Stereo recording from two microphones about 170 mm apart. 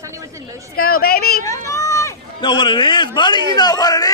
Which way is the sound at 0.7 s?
60° left (ahead or behind).